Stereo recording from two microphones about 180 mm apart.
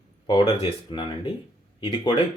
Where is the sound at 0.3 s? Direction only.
30° left (ahead or behind).